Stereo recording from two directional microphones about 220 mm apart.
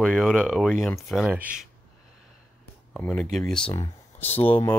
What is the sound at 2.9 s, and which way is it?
Speech, 5° left (ahead or behind).